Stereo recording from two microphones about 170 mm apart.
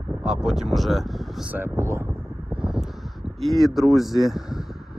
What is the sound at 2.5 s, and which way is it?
Crow, 5° right (ahead or behind).